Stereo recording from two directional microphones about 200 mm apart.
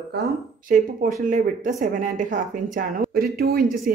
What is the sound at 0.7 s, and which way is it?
Speech, 40° right (ahead or behind).